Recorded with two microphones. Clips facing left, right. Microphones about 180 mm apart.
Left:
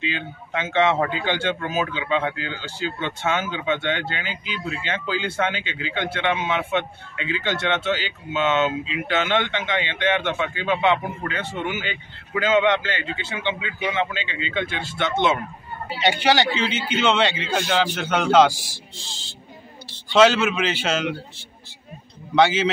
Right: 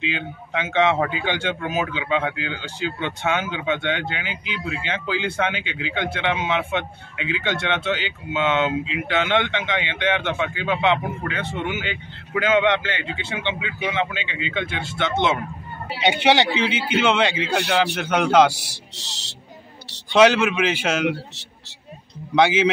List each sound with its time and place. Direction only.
0.0 s speech: 15° right (ahead or behind)
16.6 s speech: 10° right (ahead or behind)
18.5 s speech: 75° right (ahead or behind)
20.1 s speech: 15° right (ahead or behind)
22.3 s speech: 15° right (ahead or behind)